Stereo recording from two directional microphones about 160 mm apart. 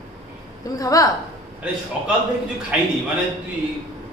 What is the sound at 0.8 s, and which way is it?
Speech, 20° left (ahead or behind).